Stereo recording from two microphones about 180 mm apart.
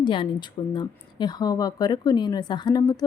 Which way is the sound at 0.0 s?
25° left (ahead or behind).